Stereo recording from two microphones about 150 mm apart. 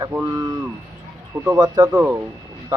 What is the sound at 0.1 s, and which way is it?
Speech, 20° right (ahead or behind).